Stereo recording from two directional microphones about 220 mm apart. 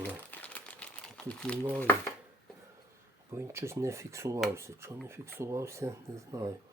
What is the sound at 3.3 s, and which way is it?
Speech, 10° right (ahead or behind).